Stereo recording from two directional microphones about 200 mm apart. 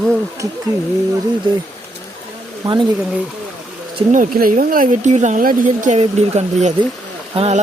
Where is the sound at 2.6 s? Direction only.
20° right (ahead or behind).